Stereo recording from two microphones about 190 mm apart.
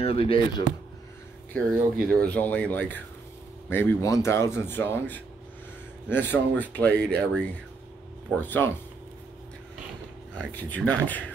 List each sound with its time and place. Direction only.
0.0 s speech: 30° left (ahead or behind)
2.0 s speech: 5° left (ahead or behind)
10.3 s speech: 5° left (ahead or behind)